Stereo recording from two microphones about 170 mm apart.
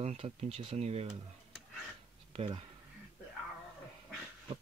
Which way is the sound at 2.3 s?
35° right (ahead or behind).